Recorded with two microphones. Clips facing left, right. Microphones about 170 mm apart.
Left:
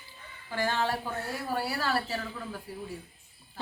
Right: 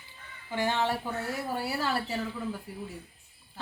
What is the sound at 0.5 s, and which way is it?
A woman's voice, 20° right (ahead or behind).